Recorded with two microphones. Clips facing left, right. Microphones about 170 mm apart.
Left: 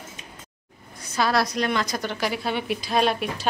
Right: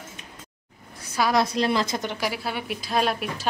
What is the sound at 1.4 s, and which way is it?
Speech, 30° right (ahead or behind).